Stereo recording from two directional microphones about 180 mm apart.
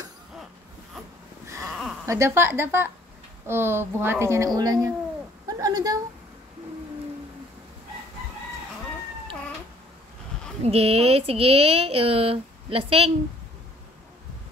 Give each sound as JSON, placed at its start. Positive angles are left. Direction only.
{"t": 1.7, "sound": "a sound", "side_deg": 0}
{"t": 2.0, "sound": "a woman's voice", "side_deg": -15}
{"t": 10.6, "sound": "speech", "side_deg": -35}